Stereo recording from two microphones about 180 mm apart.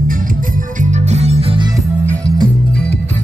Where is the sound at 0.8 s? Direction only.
40° right (ahead or behind).